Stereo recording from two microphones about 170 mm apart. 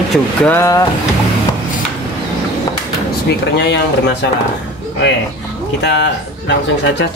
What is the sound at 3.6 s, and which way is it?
Speech, 85° left.